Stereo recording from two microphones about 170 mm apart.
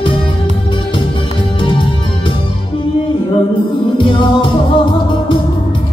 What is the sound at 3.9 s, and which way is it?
Music, 30° left (ahead or behind).